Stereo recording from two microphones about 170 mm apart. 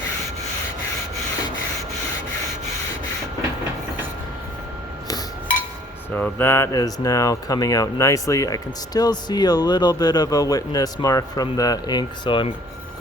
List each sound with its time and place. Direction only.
6.1 s speech: 10° left (ahead or behind); by 12.5 s 30° left (ahead or behind)